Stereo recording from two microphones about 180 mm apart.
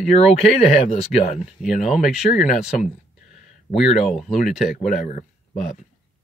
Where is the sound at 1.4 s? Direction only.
Centre (ahead or behind).